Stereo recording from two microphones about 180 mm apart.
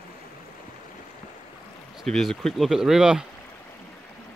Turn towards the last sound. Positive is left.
turn(degrees=-5)  # may be behind; listen again after turning